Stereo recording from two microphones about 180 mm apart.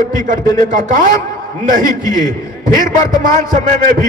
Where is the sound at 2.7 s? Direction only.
45° right (ahead or behind).